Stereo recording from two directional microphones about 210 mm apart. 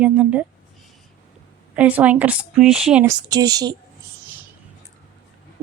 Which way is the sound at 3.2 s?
20° right (ahead or behind).